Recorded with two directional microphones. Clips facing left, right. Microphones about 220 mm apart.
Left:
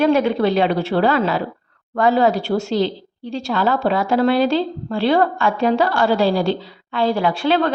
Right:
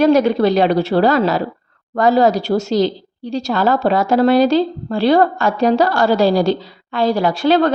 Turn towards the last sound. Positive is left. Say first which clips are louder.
# right 4 dB
turn(degrees=-40)  # may be behind; listen again after turning